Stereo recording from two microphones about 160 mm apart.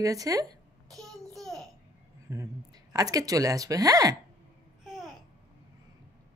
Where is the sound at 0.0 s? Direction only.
20° right (ahead or behind).